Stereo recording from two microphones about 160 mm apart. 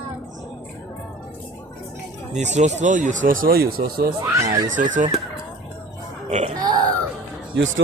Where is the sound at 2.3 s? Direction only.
45° right (ahead or behind); by 4.1 s 65° right (ahead or behind).